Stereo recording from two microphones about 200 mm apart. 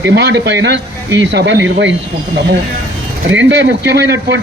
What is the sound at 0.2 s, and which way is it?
Speech, 60° right (ahead or behind).